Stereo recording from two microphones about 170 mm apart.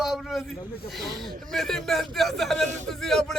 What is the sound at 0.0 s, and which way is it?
A man's voice, centre (ahead or behind).